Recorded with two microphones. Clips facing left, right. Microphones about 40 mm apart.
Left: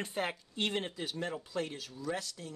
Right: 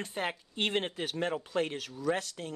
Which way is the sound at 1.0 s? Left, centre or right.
Right.